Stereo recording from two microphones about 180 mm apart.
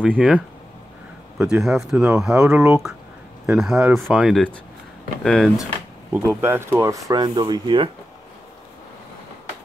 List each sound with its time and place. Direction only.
0.0 s speech: 5° right (ahead or behind)
1.4 s speech: centre (ahead or behind)
6.1 s speech: 15° right (ahead or behind)